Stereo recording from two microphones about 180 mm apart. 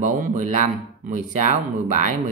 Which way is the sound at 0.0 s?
45° right (ahead or behind).